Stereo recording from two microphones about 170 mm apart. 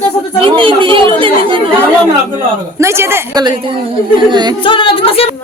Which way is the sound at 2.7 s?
15° right (ahead or behind).